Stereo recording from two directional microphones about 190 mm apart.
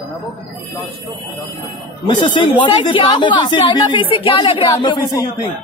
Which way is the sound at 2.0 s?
25° left (ahead or behind).